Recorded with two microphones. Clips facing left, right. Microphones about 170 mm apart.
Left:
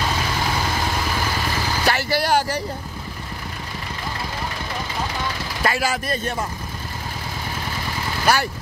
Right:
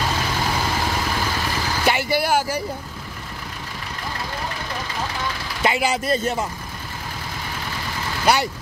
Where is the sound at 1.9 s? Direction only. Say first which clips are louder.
Right 1 dB; 15° right (ahead or behind).